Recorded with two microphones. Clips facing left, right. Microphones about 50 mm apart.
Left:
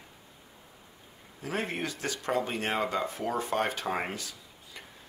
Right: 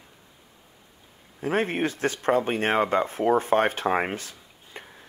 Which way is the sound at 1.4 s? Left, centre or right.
Right.